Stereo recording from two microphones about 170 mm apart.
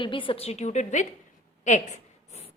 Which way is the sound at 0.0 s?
30° left (ahead or behind).